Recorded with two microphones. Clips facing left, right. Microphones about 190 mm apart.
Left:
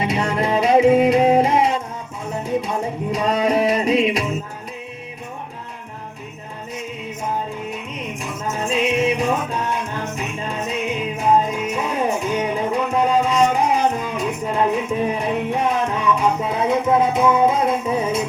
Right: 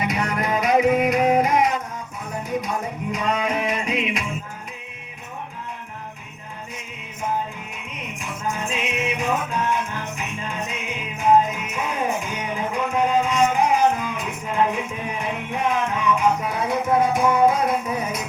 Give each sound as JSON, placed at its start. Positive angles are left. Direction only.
{"t": 0.0, "sound": "music", "side_deg": 30}
{"t": 8.2, "sound": "music", "side_deg": 40}